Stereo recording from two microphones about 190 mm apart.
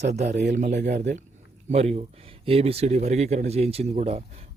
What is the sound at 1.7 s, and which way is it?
Speech, 35° right (ahead or behind).